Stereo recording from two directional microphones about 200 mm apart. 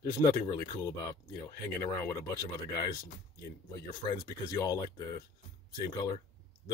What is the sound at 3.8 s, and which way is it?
Speech, 15° left (ahead or behind).